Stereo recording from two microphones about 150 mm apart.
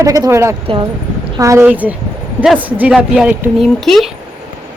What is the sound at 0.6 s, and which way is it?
Speech, 35° right (ahead or behind).